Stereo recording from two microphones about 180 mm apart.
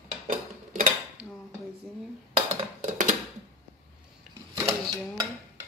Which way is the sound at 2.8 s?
45° right (ahead or behind).